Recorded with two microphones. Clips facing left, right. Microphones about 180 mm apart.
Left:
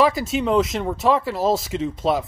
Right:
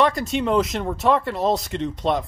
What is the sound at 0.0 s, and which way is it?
Speech, centre (ahead or behind).